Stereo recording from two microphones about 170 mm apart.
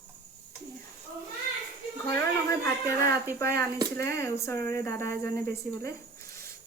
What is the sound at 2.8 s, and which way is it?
Speech, 15° left (ahead or behind).